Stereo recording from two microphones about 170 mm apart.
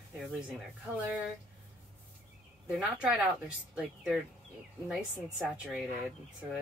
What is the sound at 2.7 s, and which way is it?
Speech, 5° right (ahead or behind).